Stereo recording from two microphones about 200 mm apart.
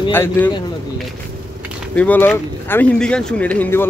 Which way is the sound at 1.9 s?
10° left (ahead or behind).